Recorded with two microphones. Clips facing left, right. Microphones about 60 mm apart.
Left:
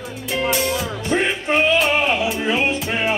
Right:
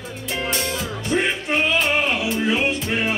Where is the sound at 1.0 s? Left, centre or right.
Centre.